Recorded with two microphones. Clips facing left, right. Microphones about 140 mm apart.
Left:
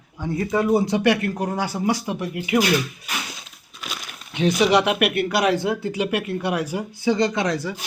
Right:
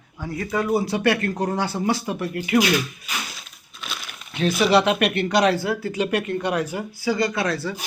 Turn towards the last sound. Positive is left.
turn(degrees=15)  # may be behind; listen again after turning